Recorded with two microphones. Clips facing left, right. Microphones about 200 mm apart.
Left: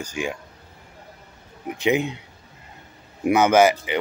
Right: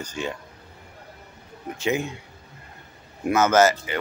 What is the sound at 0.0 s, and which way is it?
Speech, 10° left (ahead or behind).